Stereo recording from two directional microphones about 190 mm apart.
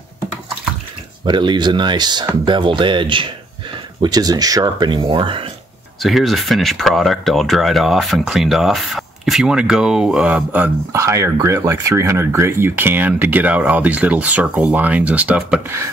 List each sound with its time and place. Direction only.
1.2 s speech: 25° right (ahead or behind)
5.9 s speech: centre (ahead or behind)